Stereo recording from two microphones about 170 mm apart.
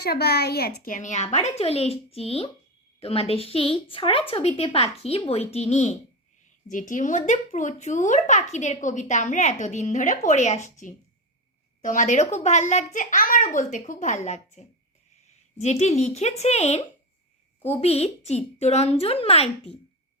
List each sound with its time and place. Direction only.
0.0 s a woman's voice: 70° left (ahead or behind); by 14.6 s 45° left (ahead or behind)
15.6 s a woman's voice: 40° left (ahead or behind)